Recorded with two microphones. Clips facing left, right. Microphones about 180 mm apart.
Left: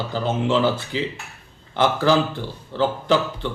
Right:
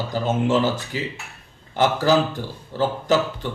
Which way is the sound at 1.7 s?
45° right (ahead or behind).